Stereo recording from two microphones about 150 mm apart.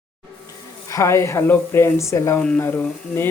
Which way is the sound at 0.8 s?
20° left (ahead or behind).